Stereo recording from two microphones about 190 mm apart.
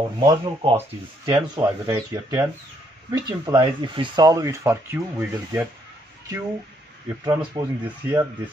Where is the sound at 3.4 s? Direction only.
25° right (ahead or behind).